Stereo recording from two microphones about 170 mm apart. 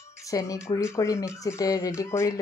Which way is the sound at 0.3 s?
20° left (ahead or behind).